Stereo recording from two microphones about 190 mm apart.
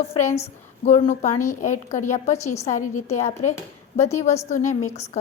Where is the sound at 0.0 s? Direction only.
30° left (ahead or behind).